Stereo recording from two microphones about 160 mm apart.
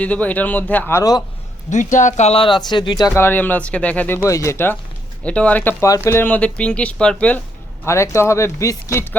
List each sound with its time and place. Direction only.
0.0 s speech: 10° left (ahead or behind)
1.7 s speech: 50° left (ahead or behind); by 3.1 s 30° left (ahead or behind)
3.2 s speech: 10° left (ahead or behind)